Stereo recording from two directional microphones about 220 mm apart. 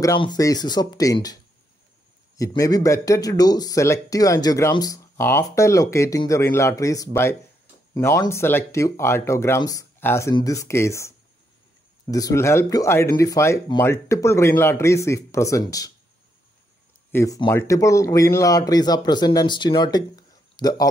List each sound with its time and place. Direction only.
0.0 s speech: 15° left (ahead or behind)
17.1 s speech: 15° left (ahead or behind)